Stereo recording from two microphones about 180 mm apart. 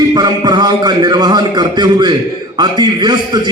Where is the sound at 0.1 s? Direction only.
25° right (ahead or behind).